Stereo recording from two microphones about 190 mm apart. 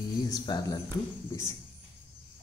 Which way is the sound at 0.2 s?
20° left (ahead or behind).